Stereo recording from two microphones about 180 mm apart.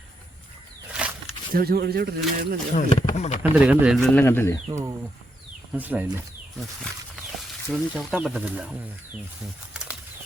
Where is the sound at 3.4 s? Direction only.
10° right (ahead or behind); by 4.6 s 15° left (ahead or behind).